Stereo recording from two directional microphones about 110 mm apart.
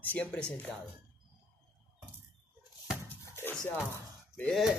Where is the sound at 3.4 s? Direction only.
20° left (ahead or behind).